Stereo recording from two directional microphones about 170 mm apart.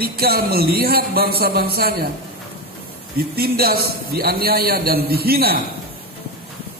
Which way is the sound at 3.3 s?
65° right (ahead or behind).